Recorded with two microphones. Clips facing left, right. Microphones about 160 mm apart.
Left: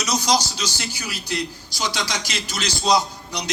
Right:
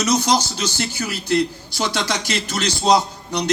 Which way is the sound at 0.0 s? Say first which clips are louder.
Right 3 dB; 55° right (ahead or behind).